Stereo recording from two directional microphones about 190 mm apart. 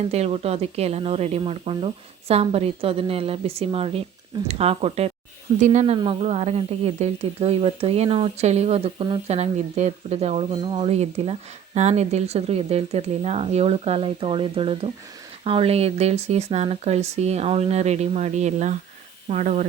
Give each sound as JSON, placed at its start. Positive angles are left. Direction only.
{"t": 0.0, "sound": "a woman's voice", "side_deg": -35}